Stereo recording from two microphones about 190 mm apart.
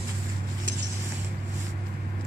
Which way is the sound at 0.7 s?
65° right (ahead or behind).